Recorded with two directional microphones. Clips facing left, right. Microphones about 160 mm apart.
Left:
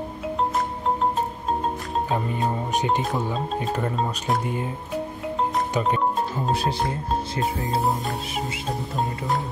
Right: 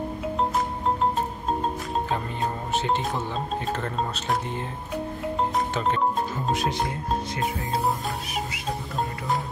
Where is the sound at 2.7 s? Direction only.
15° left (ahead or behind).